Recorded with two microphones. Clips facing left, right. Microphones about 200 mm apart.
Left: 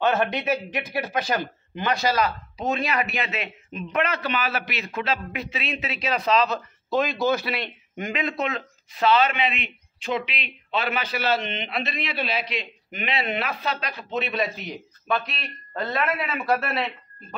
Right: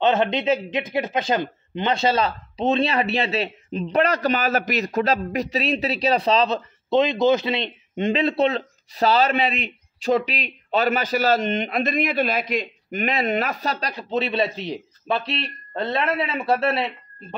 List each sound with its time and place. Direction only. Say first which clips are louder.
0.0 s speech: right 3 dB; 20° right (ahead or behind)